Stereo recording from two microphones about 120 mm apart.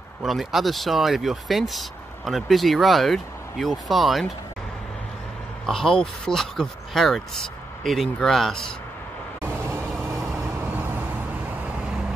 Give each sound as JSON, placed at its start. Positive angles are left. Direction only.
{"t": 0.2, "sound": "speech", "side_deg": 0}
{"t": 5.7, "sound": "speech", "side_deg": 5}
{"t": 10.8, "sound": "vehicle", "side_deg": -15}